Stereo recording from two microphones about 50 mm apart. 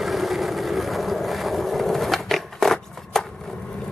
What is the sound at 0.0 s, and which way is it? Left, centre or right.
Vehicle, centre.